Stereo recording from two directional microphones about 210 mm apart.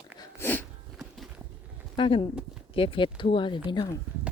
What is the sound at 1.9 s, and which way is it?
Speech, 25° left (ahead or behind).